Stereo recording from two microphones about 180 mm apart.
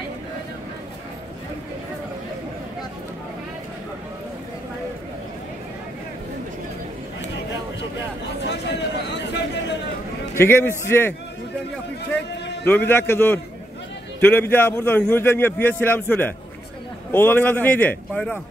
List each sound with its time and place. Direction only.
8.5 s a sound: 75° left (ahead or behind)
10.3 s a man's voice: 15° left (ahead or behind)
12.6 s a man's voice: 10° left (ahead or behind)